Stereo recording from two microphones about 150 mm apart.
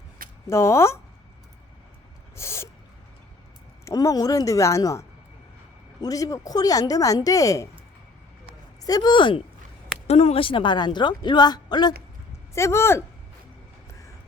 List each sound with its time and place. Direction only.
0.4 s speech: 20° left (ahead or behind)
2.3 s speech: 20° left (ahead or behind)
3.8 s speech: 20° left (ahead or behind)
8.8 s speech: 25° left (ahead or behind)
10.1 s a woman's voice: 45° left (ahead or behind); by 13.1 s 15° left (ahead or behind)